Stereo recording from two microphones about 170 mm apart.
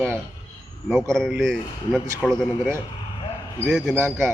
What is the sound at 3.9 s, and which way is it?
Speech, 15° right (ahead or behind).